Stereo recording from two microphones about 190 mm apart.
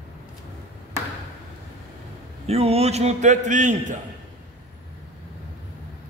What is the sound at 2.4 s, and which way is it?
A man's voice, 30° right (ahead or behind).